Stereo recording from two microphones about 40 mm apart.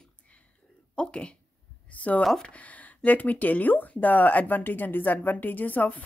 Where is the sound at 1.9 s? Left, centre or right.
Left.